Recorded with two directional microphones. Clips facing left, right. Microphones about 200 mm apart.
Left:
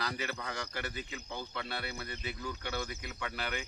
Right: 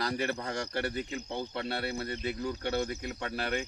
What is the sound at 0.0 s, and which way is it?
Speech, 35° right (ahead or behind).